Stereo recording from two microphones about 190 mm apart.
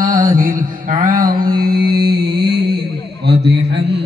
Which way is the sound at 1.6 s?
55° right (ahead or behind).